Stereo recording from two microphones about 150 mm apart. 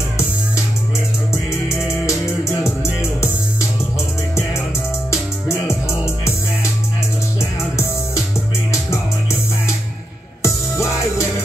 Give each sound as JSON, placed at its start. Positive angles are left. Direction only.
{"t": 2.0, "sound": "music", "side_deg": 20}
{"t": 5.1, "sound": "music", "side_deg": 20}
{"t": 10.4, "sound": "music", "side_deg": 20}